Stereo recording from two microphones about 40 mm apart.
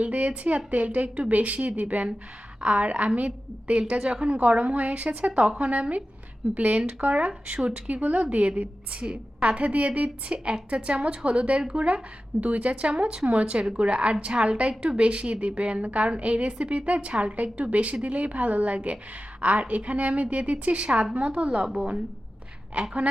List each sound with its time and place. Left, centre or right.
0.0 s a woman's voice: right
22.7 s speech: right